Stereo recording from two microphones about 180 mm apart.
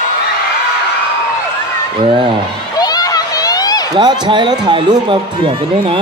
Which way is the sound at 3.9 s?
25° right (ahead or behind).